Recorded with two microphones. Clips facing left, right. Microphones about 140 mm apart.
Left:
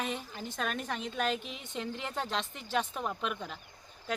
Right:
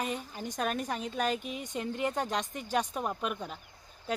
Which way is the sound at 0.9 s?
5° right (ahead or behind).